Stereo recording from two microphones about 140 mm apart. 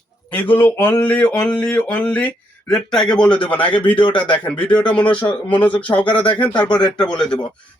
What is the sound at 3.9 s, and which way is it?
Speech, 35° left (ahead or behind).